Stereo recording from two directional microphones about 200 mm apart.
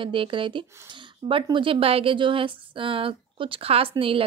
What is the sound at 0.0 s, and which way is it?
Speech, 25° right (ahead or behind).